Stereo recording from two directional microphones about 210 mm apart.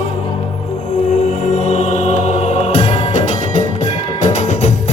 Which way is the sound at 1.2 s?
35° left (ahead or behind).